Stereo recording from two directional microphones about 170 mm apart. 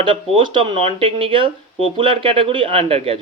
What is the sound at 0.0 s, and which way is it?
Speech, 30° right (ahead or behind).